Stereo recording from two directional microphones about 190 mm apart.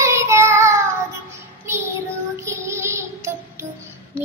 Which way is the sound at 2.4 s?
15° right (ahead or behind).